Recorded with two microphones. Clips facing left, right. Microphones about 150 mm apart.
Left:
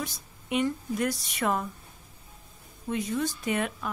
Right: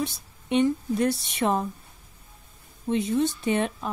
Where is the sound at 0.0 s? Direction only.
25° right (ahead or behind).